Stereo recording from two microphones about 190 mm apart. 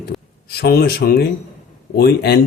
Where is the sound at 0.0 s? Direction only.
55° left (ahead or behind).